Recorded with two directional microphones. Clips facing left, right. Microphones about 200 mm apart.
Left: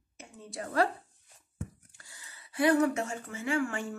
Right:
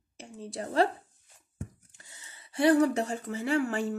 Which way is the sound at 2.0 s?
20° right (ahead or behind).